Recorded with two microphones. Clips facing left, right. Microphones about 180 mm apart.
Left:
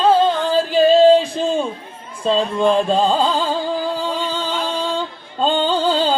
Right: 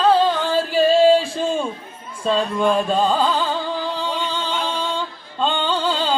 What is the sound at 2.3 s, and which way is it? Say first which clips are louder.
Music: left 2 dB; 25° left (ahead or behind).